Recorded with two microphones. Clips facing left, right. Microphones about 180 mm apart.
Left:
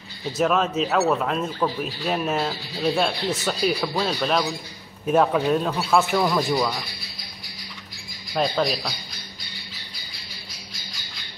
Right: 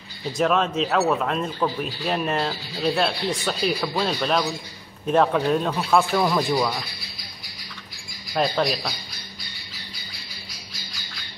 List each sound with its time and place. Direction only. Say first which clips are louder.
0.4 s speech: even; centre (ahead or behind)
8.4 s speech: even; centre (ahead or behind)